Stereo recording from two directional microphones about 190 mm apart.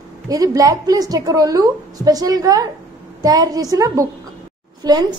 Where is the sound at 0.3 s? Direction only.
20° right (ahead or behind).